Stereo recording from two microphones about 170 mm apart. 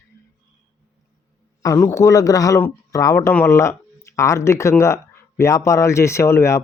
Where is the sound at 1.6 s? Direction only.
20° left (ahead or behind).